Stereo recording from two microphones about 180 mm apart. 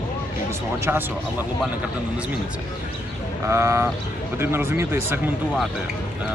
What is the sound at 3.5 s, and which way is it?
Speech, 15° right (ahead or behind).